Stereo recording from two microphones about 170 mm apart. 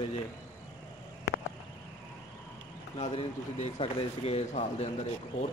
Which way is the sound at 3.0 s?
40° left (ahead or behind).